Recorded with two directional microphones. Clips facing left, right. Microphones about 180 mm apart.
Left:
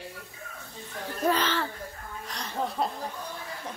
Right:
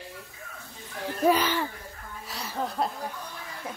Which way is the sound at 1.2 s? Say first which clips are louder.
Right 3 dB; 10° right (ahead or behind).